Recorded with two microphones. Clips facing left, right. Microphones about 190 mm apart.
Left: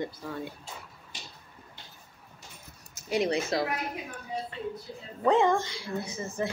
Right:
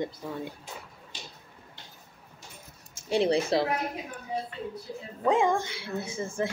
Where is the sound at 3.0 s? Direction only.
30° right (ahead or behind).